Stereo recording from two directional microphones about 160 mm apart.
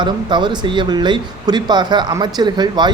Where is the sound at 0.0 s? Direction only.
30° right (ahead or behind).